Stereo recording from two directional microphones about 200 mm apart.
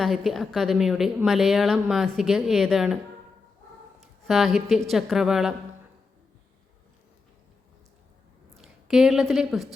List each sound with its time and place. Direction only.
0.0 s a woman's voice: centre (ahead or behind)
4.3 s a woman's voice: centre (ahead or behind)
8.5 s a woman's voice: centre (ahead or behind)